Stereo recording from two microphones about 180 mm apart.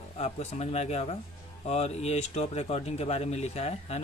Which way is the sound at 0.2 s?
35° left (ahead or behind).